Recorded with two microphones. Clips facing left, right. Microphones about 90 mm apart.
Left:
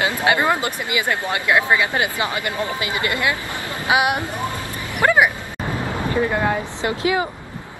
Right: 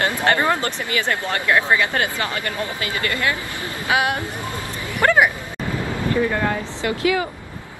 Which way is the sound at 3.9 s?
20° left (ahead or behind).